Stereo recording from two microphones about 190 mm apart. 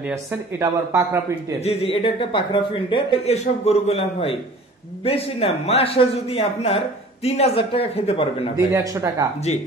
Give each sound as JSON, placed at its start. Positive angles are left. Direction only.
{"t": 0.1, "sound": "speech", "side_deg": -15}
{"t": 1.6, "sound": "speech", "side_deg": 30}
{"t": 8.5, "sound": "speech", "side_deg": -20}